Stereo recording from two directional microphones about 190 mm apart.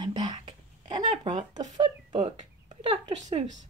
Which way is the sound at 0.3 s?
25° right (ahead or behind).